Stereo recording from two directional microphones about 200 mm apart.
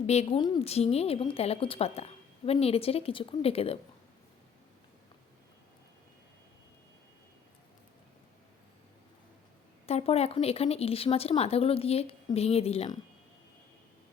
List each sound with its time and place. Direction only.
0.1 s a woman's voice: 30° left (ahead or behind)
9.8 s speech: 30° left (ahead or behind)